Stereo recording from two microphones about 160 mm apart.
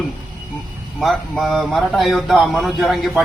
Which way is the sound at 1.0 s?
Centre (ahead or behind).